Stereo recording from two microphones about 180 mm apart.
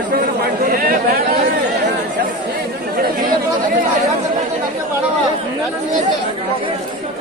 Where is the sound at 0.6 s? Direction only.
55° right (ahead or behind).